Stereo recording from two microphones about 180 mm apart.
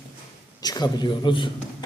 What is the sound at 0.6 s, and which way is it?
A man's voice, 20° left (ahead or behind).